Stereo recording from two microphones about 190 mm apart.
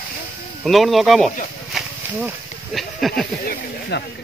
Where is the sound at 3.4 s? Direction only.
55° left (ahead or behind).